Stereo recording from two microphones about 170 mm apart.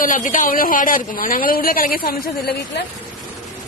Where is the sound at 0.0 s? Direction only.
50° left (ahead or behind).